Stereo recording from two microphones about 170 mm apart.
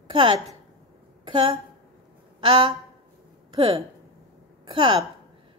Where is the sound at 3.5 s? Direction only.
30° right (ahead or behind).